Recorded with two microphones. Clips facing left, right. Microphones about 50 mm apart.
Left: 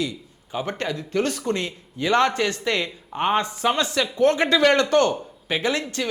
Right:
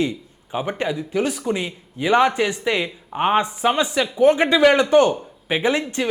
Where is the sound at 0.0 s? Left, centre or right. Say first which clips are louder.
Right 5 dB; right.